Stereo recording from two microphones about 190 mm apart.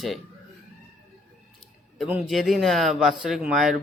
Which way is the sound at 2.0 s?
5° right (ahead or behind).